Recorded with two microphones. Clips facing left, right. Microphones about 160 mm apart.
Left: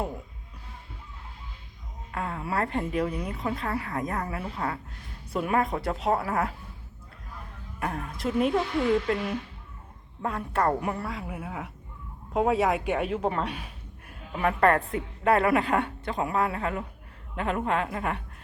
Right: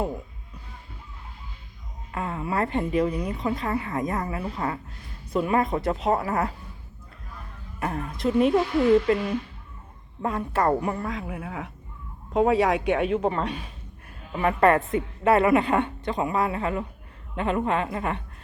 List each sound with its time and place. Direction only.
2.1 s a woman's voice: 5° right (ahead or behind)
7.8 s a woman's voice: centre (ahead or behind)